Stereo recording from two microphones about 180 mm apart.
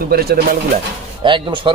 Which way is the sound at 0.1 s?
60° right (ahead or behind).